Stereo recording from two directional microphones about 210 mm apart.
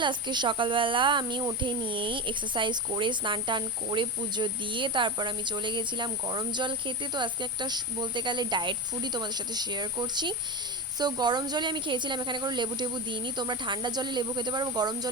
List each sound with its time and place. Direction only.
0.0 s speech: 20° right (ahead or behind)